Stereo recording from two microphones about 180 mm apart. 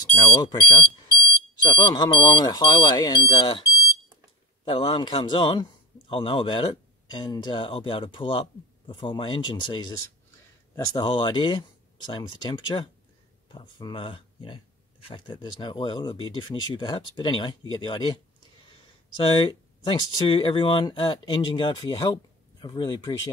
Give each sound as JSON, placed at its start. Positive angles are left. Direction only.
{"t": 0.2, "sound": "a man's voice", "side_deg": 25}
{"t": 4.6, "sound": "a man's voice", "side_deg": 30}